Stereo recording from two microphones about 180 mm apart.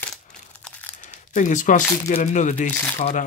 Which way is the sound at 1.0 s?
45° left (ahead or behind).